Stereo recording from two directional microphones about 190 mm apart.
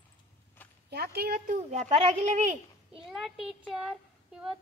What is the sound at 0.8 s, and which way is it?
Speech, 55° right (ahead or behind).